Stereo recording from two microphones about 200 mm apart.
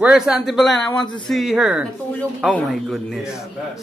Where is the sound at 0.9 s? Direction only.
25° left (ahead or behind).